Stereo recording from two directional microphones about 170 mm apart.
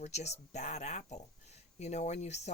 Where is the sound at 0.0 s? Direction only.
40° left (ahead or behind).